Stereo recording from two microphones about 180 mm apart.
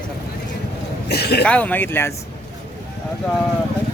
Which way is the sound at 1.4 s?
5° left (ahead or behind).